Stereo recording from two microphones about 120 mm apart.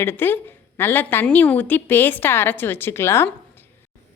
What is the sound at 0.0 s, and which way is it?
A woman's voice, 15° left (ahead or behind).